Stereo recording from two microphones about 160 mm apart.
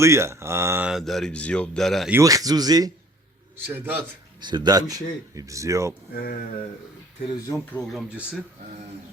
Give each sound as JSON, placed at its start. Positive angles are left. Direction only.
{"t": 0.0, "sound": "speech", "side_deg": -15}
{"t": 0.9, "sound": "speech", "side_deg": 0}
{"t": 2.1, "sound": "speech", "side_deg": -20}
{"t": 3.7, "sound": "speech", "side_deg": -10}
{"t": 4.4, "sound": "speech", "side_deg": -25}
{"t": 7.9, "sound": "speech", "side_deg": -5}